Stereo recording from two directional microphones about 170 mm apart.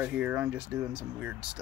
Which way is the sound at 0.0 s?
10° right (ahead or behind).